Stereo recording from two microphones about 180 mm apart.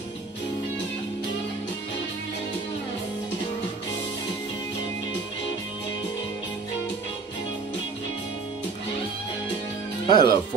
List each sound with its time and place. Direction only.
10.0 s speech: 25° left (ahead or behind)